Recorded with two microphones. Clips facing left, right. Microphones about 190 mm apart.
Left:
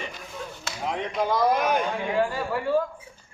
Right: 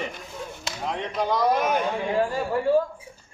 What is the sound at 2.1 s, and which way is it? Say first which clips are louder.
Speech: even; 35° right (ahead or behind).